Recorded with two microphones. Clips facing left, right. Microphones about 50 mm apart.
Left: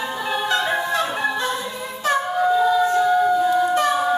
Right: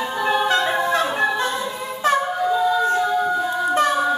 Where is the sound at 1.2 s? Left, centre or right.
Right.